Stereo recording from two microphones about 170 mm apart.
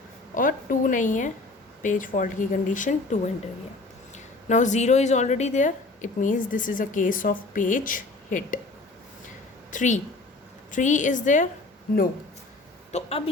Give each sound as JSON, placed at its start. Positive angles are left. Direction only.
{"t": 0.3, "sound": "a sound", "side_deg": 50}
{"t": 1.8, "sound": "a woman's voice", "side_deg": 50}
{"t": 9.7, "sound": "a woman's voice", "side_deg": 45}
{"t": 12.9, "sound": "speech", "side_deg": 35}